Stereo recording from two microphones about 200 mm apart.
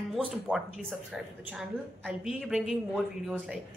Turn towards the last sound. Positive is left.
turn(degrees=0)  # may be behind; listen again after turning